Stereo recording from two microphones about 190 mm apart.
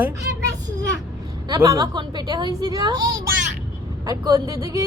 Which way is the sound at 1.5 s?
20° right (ahead or behind).